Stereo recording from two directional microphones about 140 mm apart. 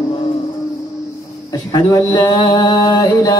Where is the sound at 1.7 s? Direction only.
30° left (ahead or behind).